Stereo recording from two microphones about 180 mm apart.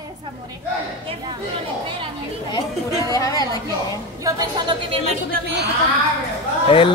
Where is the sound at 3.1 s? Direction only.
20° left (ahead or behind).